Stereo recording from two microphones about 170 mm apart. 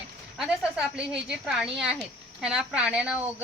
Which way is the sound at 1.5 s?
Centre (ahead or behind).